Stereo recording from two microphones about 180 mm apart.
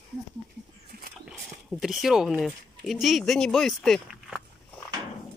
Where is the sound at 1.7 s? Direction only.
Centre (ahead or behind).